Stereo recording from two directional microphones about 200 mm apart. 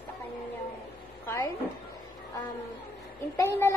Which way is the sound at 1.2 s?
15° left (ahead or behind).